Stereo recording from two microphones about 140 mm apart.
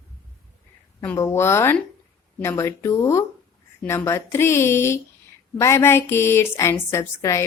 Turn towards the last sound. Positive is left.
turn(degrees=20)  # may be behind; listen again after turning